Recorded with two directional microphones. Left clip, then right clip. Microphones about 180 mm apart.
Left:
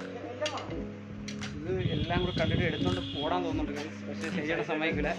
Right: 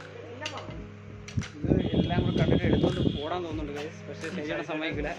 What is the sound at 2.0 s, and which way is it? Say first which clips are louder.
Speech: right 2 dB; 15° left (ahead or behind).